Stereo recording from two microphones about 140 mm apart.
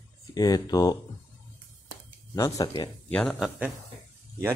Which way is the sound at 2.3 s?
25° left (ahead or behind).